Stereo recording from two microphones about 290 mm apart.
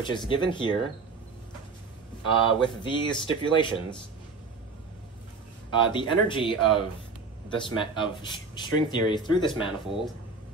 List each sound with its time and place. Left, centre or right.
0.3 s speech: centre
2.2 s speech: centre
5.7 s speech: centre